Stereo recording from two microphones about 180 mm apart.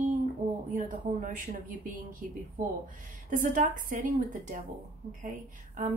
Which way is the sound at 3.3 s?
50° right (ahead or behind).